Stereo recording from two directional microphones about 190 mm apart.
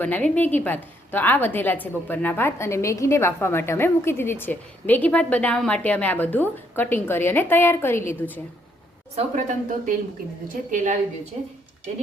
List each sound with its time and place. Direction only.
0.0 s a woman's voice: 10° left (ahead or behind)
9.1 s a woman's voice: 40° right (ahead or behind)